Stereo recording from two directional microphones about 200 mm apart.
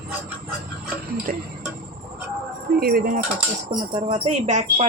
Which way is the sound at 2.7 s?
50° right (ahead or behind).